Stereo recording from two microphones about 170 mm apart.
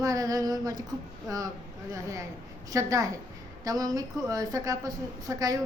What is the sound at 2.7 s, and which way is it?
A woman's voice, 20° right (ahead or behind).